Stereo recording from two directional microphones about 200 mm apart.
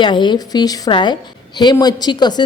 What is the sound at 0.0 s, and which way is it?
A woman's voice, 25° left (ahead or behind).